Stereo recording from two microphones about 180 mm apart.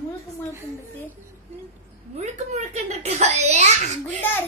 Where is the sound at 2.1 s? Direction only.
40° right (ahead or behind).